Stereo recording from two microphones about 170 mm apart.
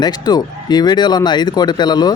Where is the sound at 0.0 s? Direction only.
25° left (ahead or behind).